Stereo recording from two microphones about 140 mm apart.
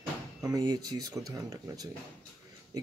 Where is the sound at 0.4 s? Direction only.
25° right (ahead or behind).